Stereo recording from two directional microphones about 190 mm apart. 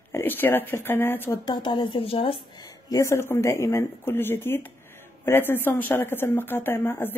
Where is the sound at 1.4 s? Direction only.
25° left (ahead or behind).